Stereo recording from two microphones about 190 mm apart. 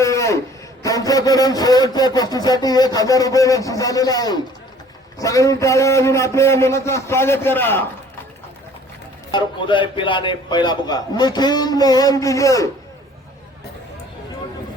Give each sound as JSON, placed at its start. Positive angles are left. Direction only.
{"t": 0.0, "sound": "a man's voice", "side_deg": 15}
{"t": 9.3, "sound": "a man's voice", "side_deg": 25}